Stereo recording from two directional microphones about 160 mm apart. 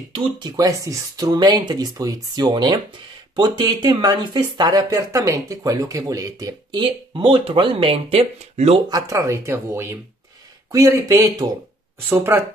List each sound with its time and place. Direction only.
0.1 s speech: 25° right (ahead or behind)
8.8 s speech: 20° right (ahead or behind)